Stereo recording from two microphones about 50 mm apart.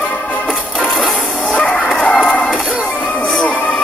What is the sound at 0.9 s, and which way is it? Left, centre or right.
Music, centre.